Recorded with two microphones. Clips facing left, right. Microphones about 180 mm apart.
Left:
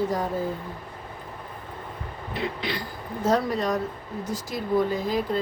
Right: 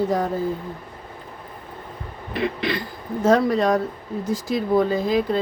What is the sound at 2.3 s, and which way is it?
Throat clearing, 75° right (ahead or behind).